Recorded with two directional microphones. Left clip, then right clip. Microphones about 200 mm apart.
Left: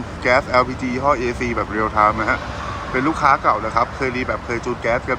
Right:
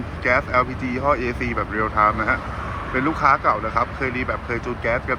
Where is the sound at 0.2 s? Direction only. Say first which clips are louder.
Left 3 dB; 20° left (ahead or behind).